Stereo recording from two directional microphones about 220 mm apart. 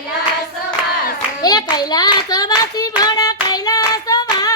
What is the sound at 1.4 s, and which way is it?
Hands, 20° left (ahead or behind).